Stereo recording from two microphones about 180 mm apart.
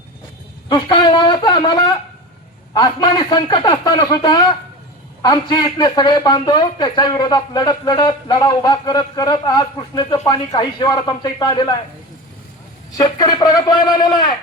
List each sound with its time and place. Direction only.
0.7 s speech: 25° left (ahead or behind)
13.0 s speech: 20° left (ahead or behind)